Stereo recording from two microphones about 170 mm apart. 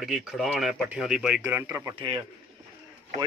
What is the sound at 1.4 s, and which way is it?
Speech, 15° right (ahead or behind).